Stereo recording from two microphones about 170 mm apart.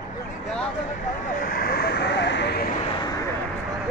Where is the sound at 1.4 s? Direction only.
55° left (ahead or behind); by 2.6 s 85° left.